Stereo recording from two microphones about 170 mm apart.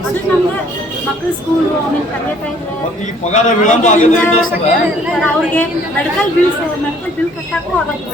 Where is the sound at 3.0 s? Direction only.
45° left (ahead or behind).